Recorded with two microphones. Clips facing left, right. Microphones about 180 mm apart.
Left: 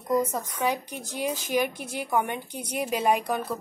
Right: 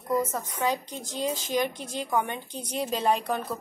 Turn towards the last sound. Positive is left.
turn(degrees=10)  # may be behind; listen again after turning